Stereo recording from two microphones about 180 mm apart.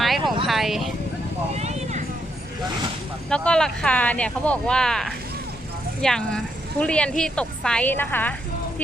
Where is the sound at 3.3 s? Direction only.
5° left (ahead or behind).